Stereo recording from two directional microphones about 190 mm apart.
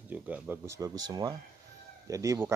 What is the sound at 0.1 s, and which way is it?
Speech, 10° right (ahead or behind).